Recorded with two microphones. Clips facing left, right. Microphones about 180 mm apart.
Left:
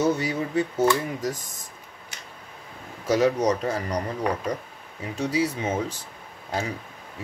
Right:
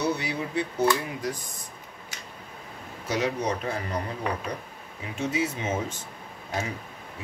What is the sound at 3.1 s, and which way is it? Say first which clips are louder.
Speech: left 6 dB; 40° left (ahead or behind).